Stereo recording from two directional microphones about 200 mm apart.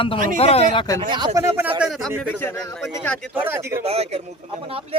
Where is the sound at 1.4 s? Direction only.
10° right (ahead or behind).